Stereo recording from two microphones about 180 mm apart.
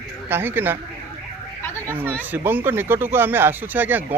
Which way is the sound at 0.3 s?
10° right (ahead or behind).